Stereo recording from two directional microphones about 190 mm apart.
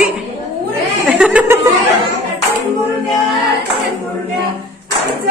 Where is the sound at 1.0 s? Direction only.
5° right (ahead or behind).